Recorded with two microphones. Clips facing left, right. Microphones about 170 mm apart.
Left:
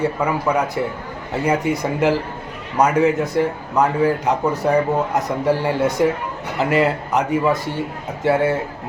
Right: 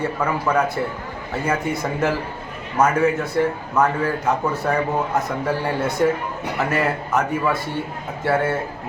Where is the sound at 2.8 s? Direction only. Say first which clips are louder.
Left 2 dB; 15° left (ahead or behind).